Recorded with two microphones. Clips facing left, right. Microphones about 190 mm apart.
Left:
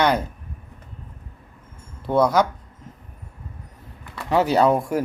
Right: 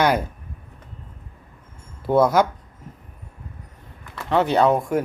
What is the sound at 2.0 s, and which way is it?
Speech, 5° right (ahead or behind).